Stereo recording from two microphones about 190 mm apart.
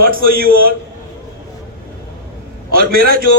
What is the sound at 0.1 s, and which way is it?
Speech, 50° right (ahead or behind).